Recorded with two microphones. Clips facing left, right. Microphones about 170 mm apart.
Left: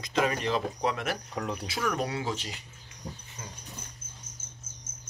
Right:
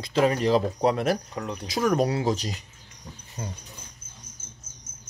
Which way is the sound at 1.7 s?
40° right (ahead or behind).